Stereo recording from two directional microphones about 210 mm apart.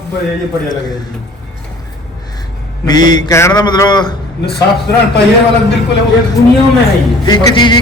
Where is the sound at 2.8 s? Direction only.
20° left (ahead or behind).